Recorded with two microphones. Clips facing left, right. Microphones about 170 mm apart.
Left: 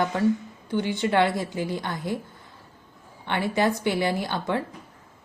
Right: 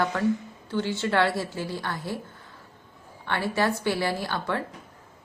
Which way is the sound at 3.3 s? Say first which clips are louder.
Left 2 dB; 20° left (ahead or behind).